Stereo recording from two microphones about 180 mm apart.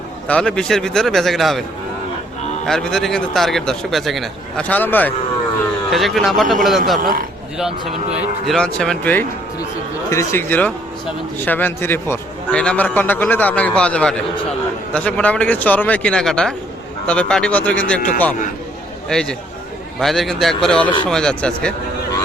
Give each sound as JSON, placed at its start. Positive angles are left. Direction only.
{"t": 0.3, "sound": "a man's voice", "side_deg": 5}
{"t": 2.6, "sound": "a man's voice", "side_deg": 0}
{"t": 5.9, "sound": "a man's voice", "side_deg": 0}
{"t": 7.0, "sound": "speech", "side_deg": -50}
{"t": 8.4, "sound": "a man's voice", "side_deg": 5}